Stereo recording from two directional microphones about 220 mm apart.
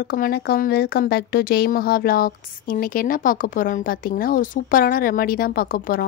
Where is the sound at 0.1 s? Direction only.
45° left (ahead or behind).